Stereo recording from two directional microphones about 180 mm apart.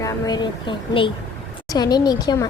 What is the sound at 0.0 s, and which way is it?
A child's voice, 25° left (ahead or behind).